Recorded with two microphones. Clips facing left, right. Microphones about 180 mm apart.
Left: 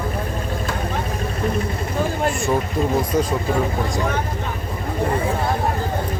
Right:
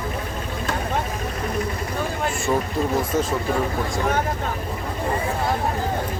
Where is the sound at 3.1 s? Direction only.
15° left (ahead or behind).